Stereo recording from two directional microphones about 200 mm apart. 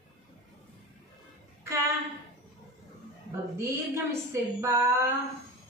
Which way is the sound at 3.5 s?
15° right (ahead or behind).